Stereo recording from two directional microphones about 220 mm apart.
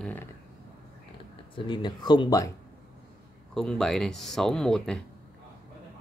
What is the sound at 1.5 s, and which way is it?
Speech, 20° left (ahead or behind).